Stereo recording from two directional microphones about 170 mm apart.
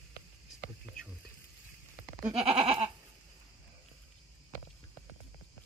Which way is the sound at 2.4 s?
35° right (ahead or behind).